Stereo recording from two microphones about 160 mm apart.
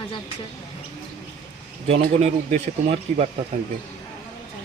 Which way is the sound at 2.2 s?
40° right (ahead or behind).